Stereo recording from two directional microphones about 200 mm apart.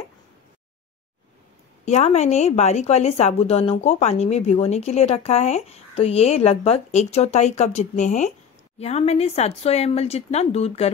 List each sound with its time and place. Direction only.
1.9 s speech: 35° left (ahead or behind)